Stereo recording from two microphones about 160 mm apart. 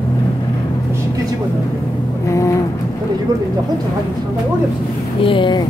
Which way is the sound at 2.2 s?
20° left (ahead or behind).